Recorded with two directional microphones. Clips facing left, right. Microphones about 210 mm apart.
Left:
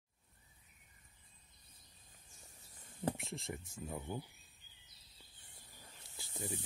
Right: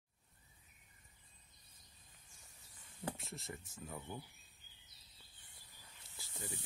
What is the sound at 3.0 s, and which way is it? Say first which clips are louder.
Speech: left 6 dB; 25° left (ahead or behind).